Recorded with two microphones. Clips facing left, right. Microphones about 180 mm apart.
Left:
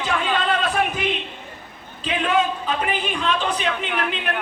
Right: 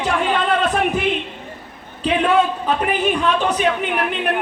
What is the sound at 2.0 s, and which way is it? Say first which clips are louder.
A man's voice: right 5 dB; 60° right (ahead or behind).